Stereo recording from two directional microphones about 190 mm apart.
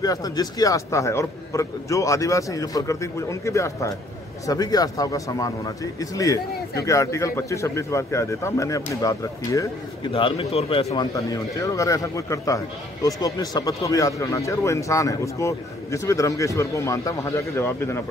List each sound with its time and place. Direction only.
0.0 s a man's voice: 20° left (ahead or behind)
11.3 s a man's voice: 15° left (ahead or behind)